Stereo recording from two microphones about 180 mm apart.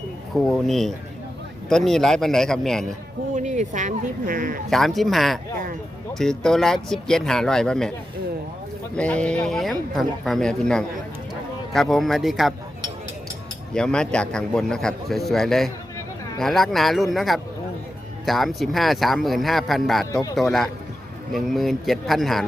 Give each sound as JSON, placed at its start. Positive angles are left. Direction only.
{"t": 0.3, "sound": "speech", "side_deg": 0}
{"t": 3.3, "sound": "speech", "side_deg": -40}
{"t": 4.7, "sound": "speech", "side_deg": 0}
{"t": 9.0, "sound": "speech", "side_deg": 5}
{"t": 13.7, "sound": "speech", "side_deg": 5}